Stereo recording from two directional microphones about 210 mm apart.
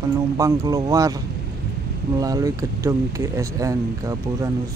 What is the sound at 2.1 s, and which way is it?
Speech, 15° right (ahead or behind).